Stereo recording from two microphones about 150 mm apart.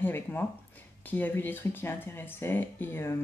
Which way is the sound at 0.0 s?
15° left (ahead or behind).